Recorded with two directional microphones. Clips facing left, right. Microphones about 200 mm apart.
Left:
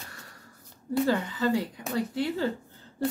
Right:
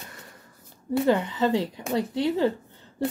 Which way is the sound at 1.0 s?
20° right (ahead or behind).